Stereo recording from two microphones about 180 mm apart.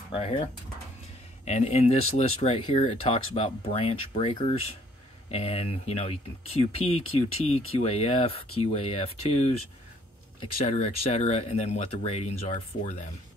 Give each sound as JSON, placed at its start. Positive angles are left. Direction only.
{"t": 0.1, "sound": "speech", "side_deg": 35}